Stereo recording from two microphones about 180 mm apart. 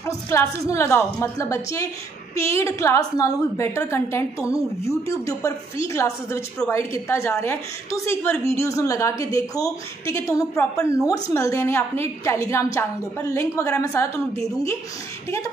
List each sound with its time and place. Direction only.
0.0 s a woman's voice: 15° left (ahead or behind)